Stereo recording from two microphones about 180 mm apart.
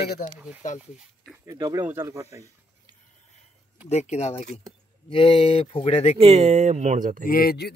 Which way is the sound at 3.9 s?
40° left (ahead or behind).